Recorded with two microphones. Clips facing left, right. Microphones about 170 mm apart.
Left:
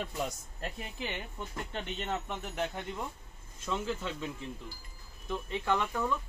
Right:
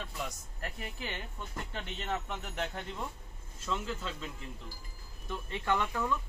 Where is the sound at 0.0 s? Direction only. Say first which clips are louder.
Left 5 dB; 25° left (ahead or behind).